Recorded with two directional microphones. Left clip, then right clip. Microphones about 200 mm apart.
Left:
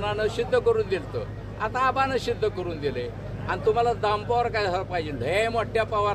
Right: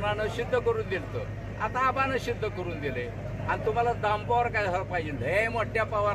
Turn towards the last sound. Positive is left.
turn(degrees=20)  # may be behind; listen again after turning